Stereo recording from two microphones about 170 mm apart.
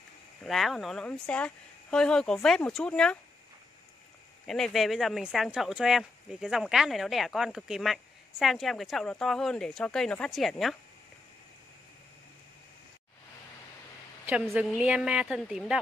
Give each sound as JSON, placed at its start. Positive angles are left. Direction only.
{"t": 0.4, "sound": "speech", "side_deg": 0}
{"t": 4.5, "sound": "speech", "side_deg": 0}
{"t": 14.8, "sound": "speech", "side_deg": -5}